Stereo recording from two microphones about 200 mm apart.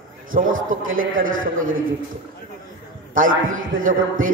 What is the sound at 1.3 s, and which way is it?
Speech, 80° right.